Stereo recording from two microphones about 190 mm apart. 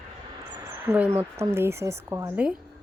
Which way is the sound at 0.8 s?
10° right (ahead or behind).